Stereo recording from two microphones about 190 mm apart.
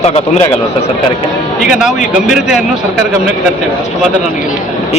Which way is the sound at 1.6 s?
Centre (ahead or behind).